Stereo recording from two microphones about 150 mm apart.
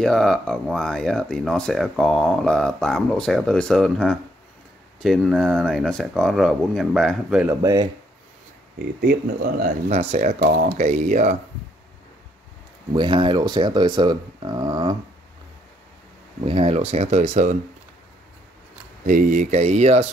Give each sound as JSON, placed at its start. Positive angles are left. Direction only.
{"t": 0.0, "sound": "speech", "side_deg": 5}
{"t": 7.6, "sound": "speech", "side_deg": -25}
{"t": 9.8, "sound": "speech", "side_deg": -50}
{"t": 10.4, "sound": "speech", "side_deg": -70}
{"t": 12.9, "sound": "speech", "side_deg": -30}
{"t": 16.4, "sound": "speech", "side_deg": -40}
{"t": 19.0, "sound": "speech", "side_deg": -60}